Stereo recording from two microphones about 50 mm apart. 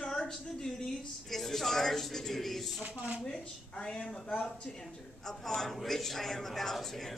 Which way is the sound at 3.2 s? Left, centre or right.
Centre.